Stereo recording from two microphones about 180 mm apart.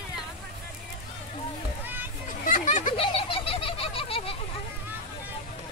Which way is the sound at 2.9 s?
30° left (ahead or behind).